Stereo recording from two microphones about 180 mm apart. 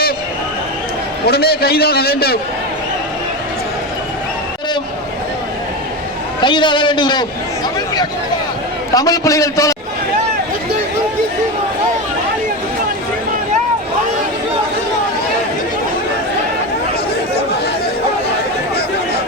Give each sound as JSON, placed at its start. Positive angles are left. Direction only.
{"t": 1.3, "sound": "a man's voice", "side_deg": 60}
{"t": 6.4, "sound": "a man's voice", "side_deg": 25}
{"t": 9.0, "sound": "a man's voice", "side_deg": 20}